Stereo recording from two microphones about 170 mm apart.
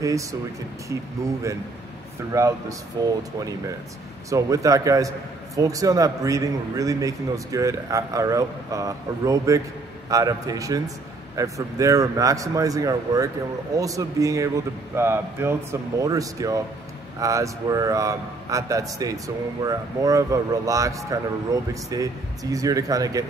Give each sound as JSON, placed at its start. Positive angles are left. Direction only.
{"t": 0.0, "sound": "a man's voice", "side_deg": -20}